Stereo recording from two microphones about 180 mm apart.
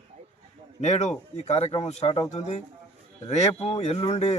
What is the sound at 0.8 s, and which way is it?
Speech, 40° left (ahead or behind).